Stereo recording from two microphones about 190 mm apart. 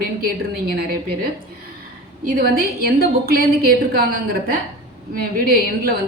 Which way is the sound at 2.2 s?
50° right (ahead or behind).